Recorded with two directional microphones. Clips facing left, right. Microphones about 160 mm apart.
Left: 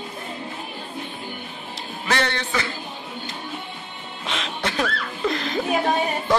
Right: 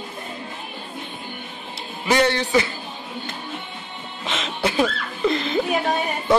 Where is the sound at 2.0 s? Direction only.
15° right (ahead or behind).